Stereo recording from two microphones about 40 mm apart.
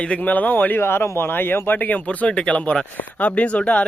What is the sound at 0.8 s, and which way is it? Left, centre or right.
Speech, left.